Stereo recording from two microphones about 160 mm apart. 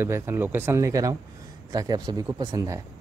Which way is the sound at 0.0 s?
15° right (ahead or behind).